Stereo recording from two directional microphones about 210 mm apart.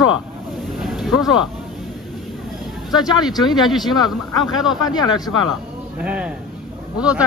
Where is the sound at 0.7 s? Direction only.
Centre (ahead or behind).